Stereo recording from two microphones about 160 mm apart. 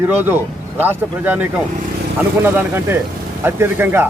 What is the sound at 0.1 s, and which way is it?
Speech, 10° right (ahead or behind).